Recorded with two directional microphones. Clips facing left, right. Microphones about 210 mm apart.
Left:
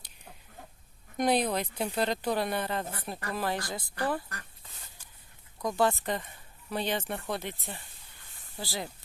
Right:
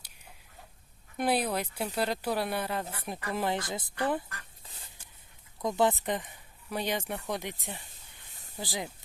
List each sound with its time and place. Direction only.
1.1 s speech: 5° right (ahead or behind)
3.2 s speech: 20° right (ahead or behind)
5.6 s speech: 20° right (ahead or behind)
8.5 s speech: 15° right (ahead or behind)